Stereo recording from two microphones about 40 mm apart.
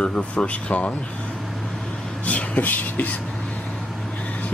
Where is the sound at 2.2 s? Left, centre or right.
Left.